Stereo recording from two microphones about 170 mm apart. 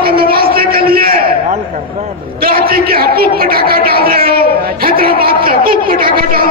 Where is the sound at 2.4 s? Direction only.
60° right (ahead or behind).